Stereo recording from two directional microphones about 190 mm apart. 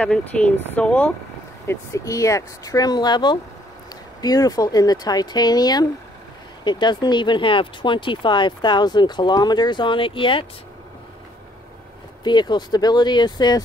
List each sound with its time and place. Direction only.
0.0 s speech: 5° left (ahead or behind); by 10.4 s 25° left (ahead or behind)
12.2 s speech: 25° left (ahead or behind)